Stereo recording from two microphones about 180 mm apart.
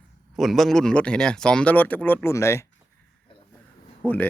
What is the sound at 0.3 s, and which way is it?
Speech, centre (ahead or behind).